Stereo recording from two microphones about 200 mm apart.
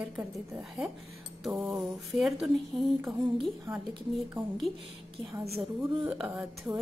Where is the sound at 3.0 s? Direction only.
15° right (ahead or behind).